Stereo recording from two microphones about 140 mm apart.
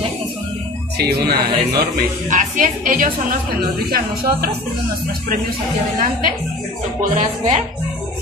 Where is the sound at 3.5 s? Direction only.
90° right.